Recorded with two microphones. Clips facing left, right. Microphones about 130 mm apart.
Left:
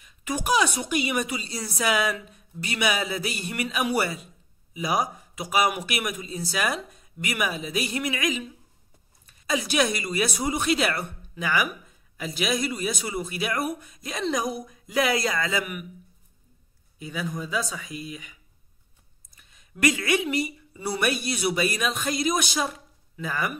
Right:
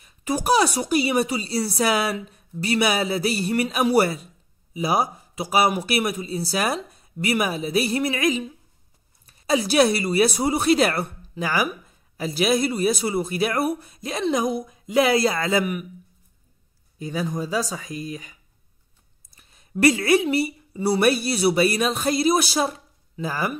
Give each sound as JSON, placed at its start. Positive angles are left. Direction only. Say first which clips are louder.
{"t": 0.0, "sound": "speech", "louder": "right 5 dB", "side_deg": -35}
{"t": 17.0, "sound": "a woman's voice", "louder": "right 5 dB", "side_deg": -35}